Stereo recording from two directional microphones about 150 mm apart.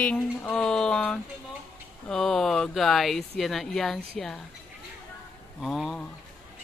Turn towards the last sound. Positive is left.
turn(degrees=5)  # may be behind; listen again after turning